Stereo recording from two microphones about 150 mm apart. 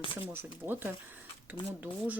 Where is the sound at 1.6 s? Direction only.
30° left (ahead or behind).